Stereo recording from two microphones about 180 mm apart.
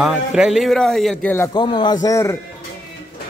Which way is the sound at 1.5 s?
25° left (ahead or behind).